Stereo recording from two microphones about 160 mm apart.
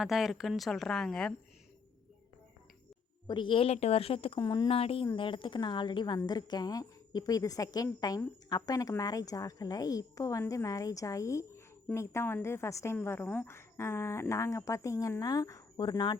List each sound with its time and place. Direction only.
0.0 s a woman's voice: centre (ahead or behind)
3.2 s a woman's voice: 30° left (ahead or behind)